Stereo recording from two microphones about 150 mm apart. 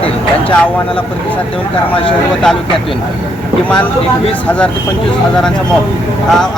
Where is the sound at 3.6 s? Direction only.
10° left (ahead or behind).